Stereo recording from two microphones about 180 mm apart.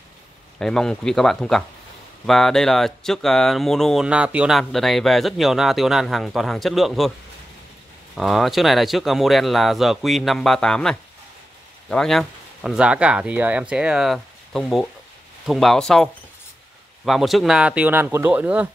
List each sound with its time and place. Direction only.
0.6 s speech: 5° left (ahead or behind)
8.2 s speech: centre (ahead or behind)